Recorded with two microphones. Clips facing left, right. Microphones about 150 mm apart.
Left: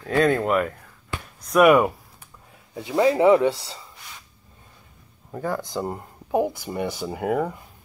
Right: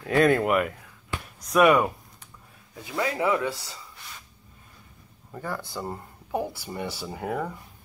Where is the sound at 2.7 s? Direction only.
30° left (ahead or behind).